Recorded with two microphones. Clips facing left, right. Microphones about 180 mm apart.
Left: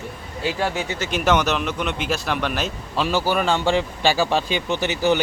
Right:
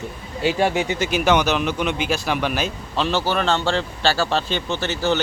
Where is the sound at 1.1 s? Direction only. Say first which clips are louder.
Even; centre (ahead or behind).